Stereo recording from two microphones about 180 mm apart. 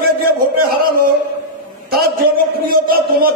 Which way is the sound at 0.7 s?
55° right (ahead or behind).